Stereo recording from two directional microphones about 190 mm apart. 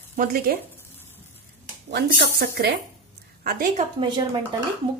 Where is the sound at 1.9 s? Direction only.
60° right (ahead or behind).